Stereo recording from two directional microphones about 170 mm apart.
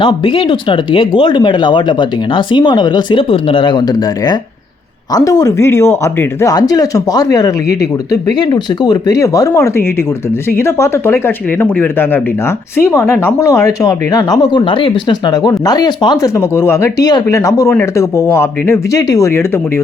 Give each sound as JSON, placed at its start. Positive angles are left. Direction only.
{"t": 0.0, "sound": "speech", "side_deg": 30}
{"t": 5.1, "sound": "speech", "side_deg": 20}